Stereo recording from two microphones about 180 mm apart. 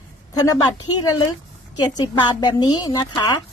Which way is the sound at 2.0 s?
20° left (ahead or behind).